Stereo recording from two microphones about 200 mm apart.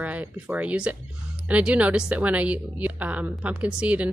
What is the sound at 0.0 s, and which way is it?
Speech, 10° right (ahead or behind).